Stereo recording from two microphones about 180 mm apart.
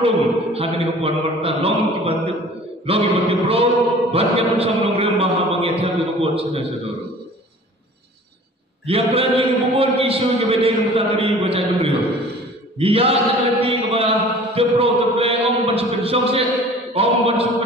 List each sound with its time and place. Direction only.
0.0 s mantra: 30° right (ahead or behind)
8.8 s mantra: 30° right (ahead or behind)